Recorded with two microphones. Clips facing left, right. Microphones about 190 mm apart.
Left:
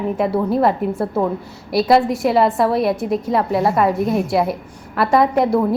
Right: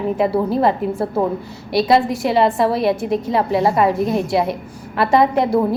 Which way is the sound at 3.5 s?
25° right (ahead or behind).